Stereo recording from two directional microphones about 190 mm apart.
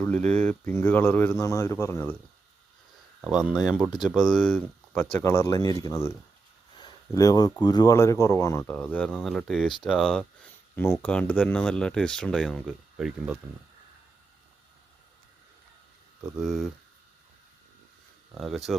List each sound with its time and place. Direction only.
0.2 s speech: 35° right (ahead or behind)
0.7 s speech: 10° left (ahead or behind)
3.2 s speech: 5° right (ahead or behind); by 6.1 s 20° left (ahead or behind)
6.7 s a sound: 20° left (ahead or behind)
7.6 s speech: 20° left (ahead or behind); by 13.4 s 5° right (ahead or behind)
16.4 s speech: centre (ahead or behind)
18.3 s speech: centre (ahead or behind)